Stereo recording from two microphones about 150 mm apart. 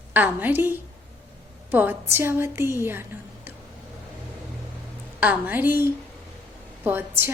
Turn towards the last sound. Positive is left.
turn(degrees=-15)  # may be behind; listen again after turning